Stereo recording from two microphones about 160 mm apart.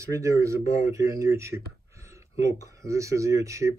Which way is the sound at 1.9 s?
20° right (ahead or behind).